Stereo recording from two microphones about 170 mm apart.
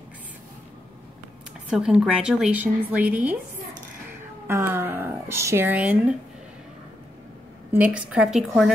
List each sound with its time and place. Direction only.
1.7 s speech: 5° right (ahead or behind)
4.5 s speech: 15° right (ahead or behind)
7.7 s speech: 10° right (ahead or behind)